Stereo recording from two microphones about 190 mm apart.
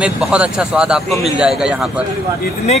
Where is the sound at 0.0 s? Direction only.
5° right (ahead or behind).